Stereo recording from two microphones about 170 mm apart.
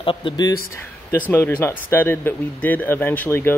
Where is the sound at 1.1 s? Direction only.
15° left (ahead or behind).